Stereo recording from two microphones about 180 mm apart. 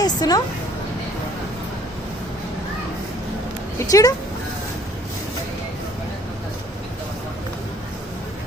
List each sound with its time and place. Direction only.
0.0 s speech: 20° left (ahead or behind)
3.8 s speech: 20° left (ahead or behind)